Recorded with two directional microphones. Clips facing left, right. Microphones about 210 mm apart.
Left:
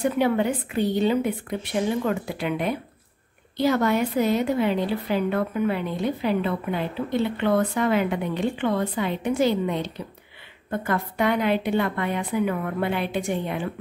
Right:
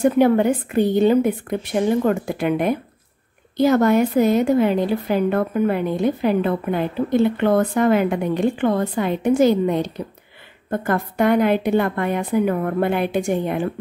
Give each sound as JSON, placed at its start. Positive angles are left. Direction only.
{"t": 0.0, "sound": "a woman's voice", "side_deg": -45}